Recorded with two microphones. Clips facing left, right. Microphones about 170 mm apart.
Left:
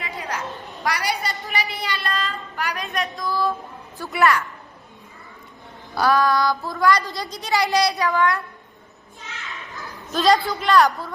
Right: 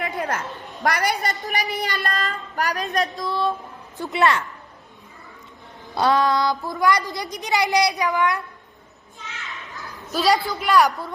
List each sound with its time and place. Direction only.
0.0 s a sound: 50° right (ahead or behind)
0.9 s a woman's voice: 45° right (ahead or behind)
3.2 s a child's voice: 25° right (ahead or behind)
5.9 s a child's voice: 25° right (ahead or behind)
10.1 s a man's voice: 10° right (ahead or behind)
10.7 s a man's voice: 15° right (ahead or behind)